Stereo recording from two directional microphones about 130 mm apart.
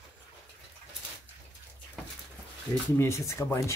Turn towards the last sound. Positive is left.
turn(degrees=20)  # may be behind; listen again after turning